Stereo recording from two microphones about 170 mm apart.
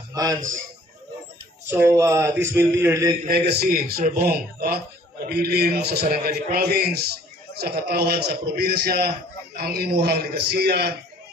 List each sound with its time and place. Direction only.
0.1 s a man's voice: 20° right (ahead or behind)
1.7 s speech: 15° right (ahead or behind)
3.3 s a man's voice: 70° right (ahead or behind)